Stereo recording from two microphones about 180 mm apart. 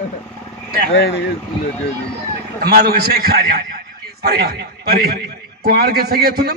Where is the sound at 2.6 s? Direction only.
60° right (ahead or behind).